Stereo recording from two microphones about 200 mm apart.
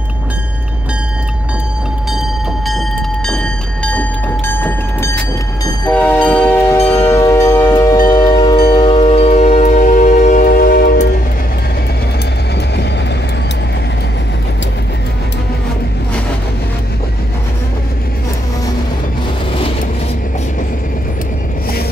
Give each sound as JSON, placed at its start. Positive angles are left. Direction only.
{"t": 2.1, "sound": "train", "side_deg": 0}
{"t": 6.9, "sound": "music", "side_deg": 15}